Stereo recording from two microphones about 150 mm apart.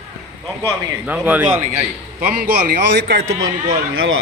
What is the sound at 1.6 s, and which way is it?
Speech, 50° right (ahead or behind).